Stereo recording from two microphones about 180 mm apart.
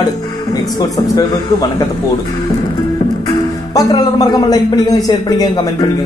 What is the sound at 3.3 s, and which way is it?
Speech, 20° left (ahead or behind).